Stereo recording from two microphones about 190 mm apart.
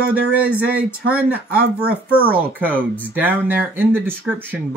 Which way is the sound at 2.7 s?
10° left (ahead or behind).